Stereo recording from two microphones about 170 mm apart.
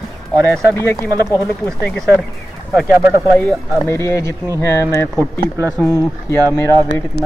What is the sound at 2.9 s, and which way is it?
Speech, 10° right (ahead or behind).